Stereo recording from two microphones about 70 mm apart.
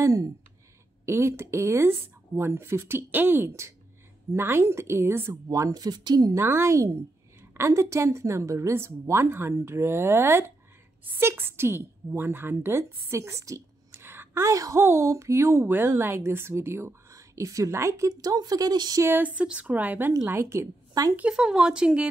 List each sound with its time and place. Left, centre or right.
0.0 s speech: right
1.0 s a woman's voice: right
5.5 s speech: right
6.3 s a woman's voice: right
13.9 s a sound: right
14.5 s a woman's voice: right
19.0 s a woman's voice: right
20.2 s a woman's voice: right
21.2 s speech: centre